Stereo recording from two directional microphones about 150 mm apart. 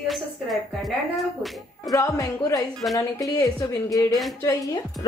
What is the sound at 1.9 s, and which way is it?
A woman's voice, 20° left (ahead or behind).